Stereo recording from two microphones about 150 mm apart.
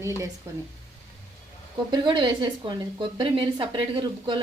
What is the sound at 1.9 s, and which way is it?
A woman's voice, 30° right (ahead or behind).